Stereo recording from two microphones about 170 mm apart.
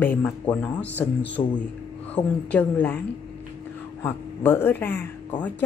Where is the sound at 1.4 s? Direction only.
20° left (ahead or behind).